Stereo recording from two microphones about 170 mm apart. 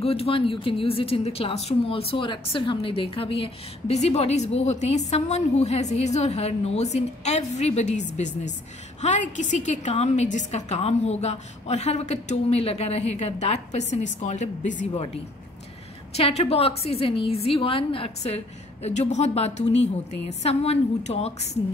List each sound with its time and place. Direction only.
0.0 s a woman's voice: 35° left (ahead or behind)
16.2 s a woman's voice: 35° left (ahead or behind)